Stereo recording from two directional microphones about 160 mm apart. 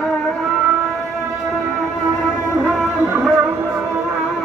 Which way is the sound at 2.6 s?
5° left (ahead or behind).